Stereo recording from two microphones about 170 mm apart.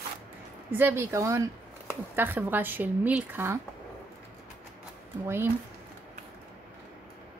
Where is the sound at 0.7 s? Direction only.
15° right (ahead or behind).